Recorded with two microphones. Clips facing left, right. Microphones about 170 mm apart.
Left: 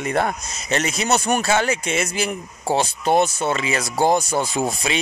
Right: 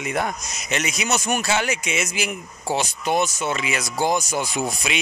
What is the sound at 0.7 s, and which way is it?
Speech, 35° left (ahead or behind).